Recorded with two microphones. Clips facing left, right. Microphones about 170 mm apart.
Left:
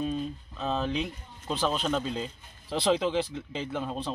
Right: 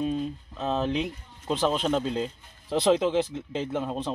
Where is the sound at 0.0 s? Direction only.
10° right (ahead or behind).